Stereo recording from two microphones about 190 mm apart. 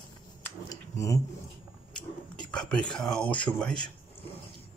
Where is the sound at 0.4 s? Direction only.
15° left (ahead or behind).